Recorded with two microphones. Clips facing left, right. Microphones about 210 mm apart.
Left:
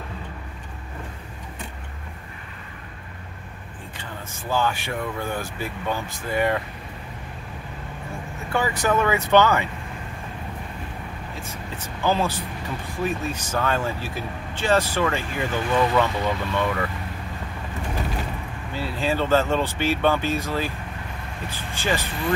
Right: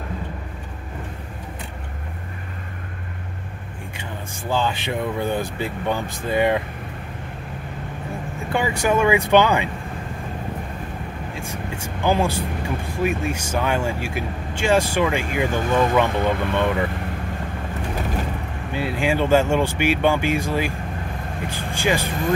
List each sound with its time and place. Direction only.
4.5 s speech: 15° right (ahead or behind)
8.5 s speech: 15° right (ahead or behind)
11.3 s speech: 10° right (ahead or behind)
15.5 s speech: 50° right (ahead or behind)
18.7 s speech: 15° right (ahead or behind)
21.7 s speech: 15° right (ahead or behind)